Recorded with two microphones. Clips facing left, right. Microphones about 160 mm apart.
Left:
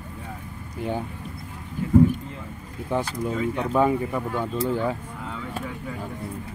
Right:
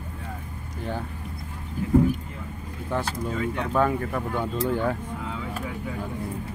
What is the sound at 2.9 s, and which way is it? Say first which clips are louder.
Speech: left 2 dB; 15° left (ahead or behind).